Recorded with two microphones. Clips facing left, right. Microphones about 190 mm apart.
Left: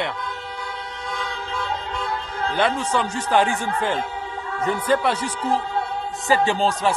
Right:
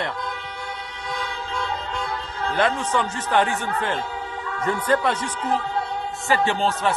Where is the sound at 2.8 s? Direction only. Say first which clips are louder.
Left 1 dB; 10° left (ahead or behind).